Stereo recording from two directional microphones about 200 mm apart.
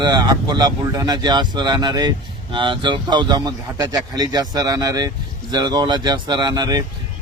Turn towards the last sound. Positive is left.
turn(degrees=-20)  # may be behind; listen again after turning